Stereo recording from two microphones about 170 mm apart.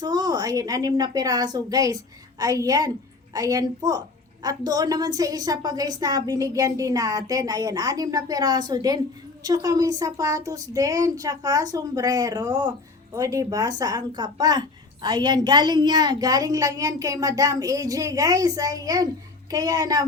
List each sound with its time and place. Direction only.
0.0 s a woman's voice: 25° right (ahead or behind)